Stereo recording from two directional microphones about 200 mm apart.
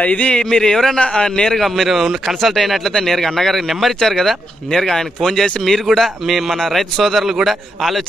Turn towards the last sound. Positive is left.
turn(degrees=0)  # may be behind; listen again after turning